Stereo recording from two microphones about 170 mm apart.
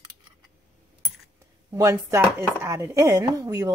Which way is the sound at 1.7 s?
20° right (ahead or behind).